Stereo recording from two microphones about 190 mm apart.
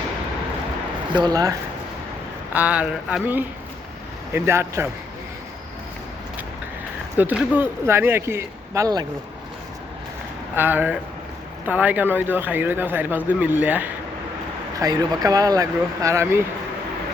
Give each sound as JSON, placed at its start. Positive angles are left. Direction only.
{"t": 1.1, "sound": "speech", "side_deg": -20}
{"t": 2.5, "sound": "speech", "side_deg": -10}
{"t": 7.2, "sound": "speech", "side_deg": -10}
{"t": 10.5, "sound": "speech", "side_deg": -10}
{"t": 14.8, "sound": "speech", "side_deg": -20}